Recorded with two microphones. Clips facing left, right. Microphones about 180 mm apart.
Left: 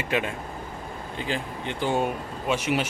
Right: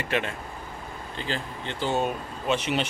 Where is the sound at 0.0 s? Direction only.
15° left (ahead or behind).